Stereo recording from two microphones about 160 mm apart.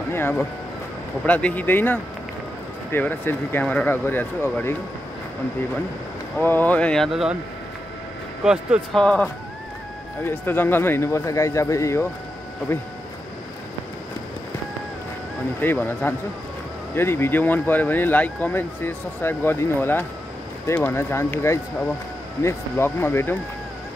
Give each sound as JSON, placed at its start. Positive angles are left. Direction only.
{"t": 0.1, "sound": "speech", "side_deg": 10}
{"t": 6.4, "sound": "speech", "side_deg": 10}
{"t": 8.5, "sound": "speech", "side_deg": -5}
{"t": 15.6, "sound": "speech", "side_deg": 10}